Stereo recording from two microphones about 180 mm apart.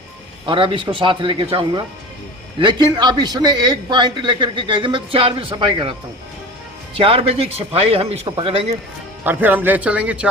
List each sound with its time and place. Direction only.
0.4 s a man's voice: 30° right (ahead or behind)
6.9 s a man's voice: 30° right (ahead or behind)
9.2 s speech: 10° right (ahead or behind)